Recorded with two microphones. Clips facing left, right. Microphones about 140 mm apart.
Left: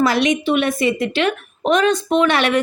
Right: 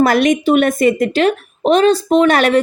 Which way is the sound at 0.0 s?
50° right (ahead or behind).